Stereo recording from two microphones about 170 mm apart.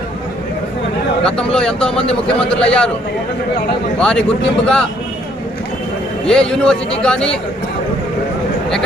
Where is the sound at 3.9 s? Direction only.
5° left (ahead or behind).